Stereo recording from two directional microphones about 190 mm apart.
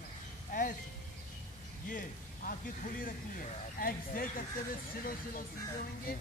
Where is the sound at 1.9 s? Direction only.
45° left (ahead or behind).